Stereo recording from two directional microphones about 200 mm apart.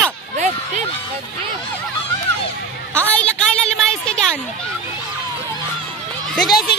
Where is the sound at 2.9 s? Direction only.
5° left (ahead or behind).